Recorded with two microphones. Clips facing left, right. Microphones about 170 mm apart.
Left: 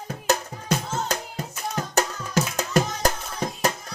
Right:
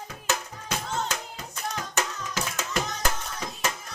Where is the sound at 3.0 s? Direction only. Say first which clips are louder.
Left 6 dB; 40° left (ahead or behind).